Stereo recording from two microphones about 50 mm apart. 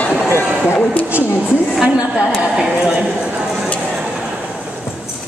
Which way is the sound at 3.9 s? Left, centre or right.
Centre.